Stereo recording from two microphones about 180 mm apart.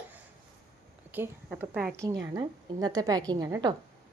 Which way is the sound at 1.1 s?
10° right (ahead or behind).